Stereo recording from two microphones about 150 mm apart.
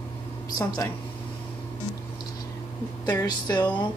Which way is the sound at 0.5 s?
25° left (ahead or behind).